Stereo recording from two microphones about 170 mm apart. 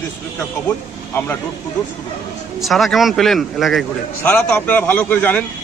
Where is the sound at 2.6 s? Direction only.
Centre (ahead or behind).